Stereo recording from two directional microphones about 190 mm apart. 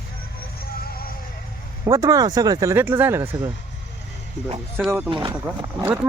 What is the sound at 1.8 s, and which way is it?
Speech, 20° right (ahead or behind).